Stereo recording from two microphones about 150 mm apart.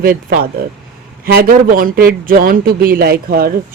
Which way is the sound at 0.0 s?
75° right (ahead or behind).